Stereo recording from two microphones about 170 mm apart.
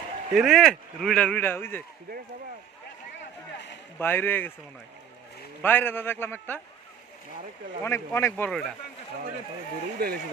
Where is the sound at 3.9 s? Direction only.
10° left (ahead or behind).